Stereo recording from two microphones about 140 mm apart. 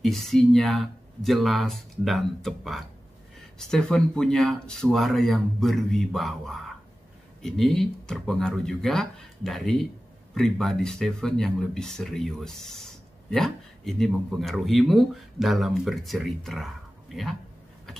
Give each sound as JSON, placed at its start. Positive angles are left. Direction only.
{"t": 0.0, "sound": "speech", "side_deg": 0}